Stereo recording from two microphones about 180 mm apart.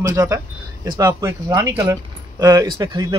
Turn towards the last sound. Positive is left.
turn(degrees=-20)  # may be behind; listen again after turning